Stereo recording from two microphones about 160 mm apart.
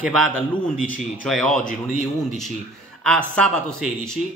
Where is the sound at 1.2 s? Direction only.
5° left (ahead or behind).